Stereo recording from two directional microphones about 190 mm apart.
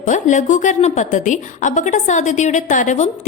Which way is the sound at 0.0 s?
40° left (ahead or behind).